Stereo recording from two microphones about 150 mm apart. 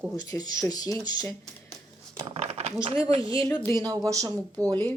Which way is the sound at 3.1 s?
35° right (ahead or behind).